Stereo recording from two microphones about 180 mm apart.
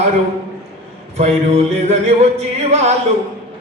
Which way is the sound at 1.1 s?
35° right (ahead or behind).